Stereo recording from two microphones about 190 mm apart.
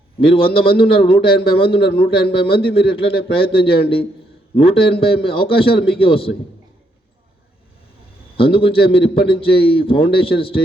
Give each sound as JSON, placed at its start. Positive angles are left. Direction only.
{"t": 0.3, "sound": "a man's voice", "side_deg": 30}
{"t": 1.8, "sound": "a man's voice", "side_deg": 55}
{"t": 2.3, "sound": "a man's voice", "side_deg": 30}
{"t": 8.4, "sound": "a man's voice", "side_deg": 30}